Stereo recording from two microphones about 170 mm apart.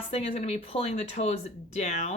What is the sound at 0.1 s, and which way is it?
Speech, 35° left (ahead or behind).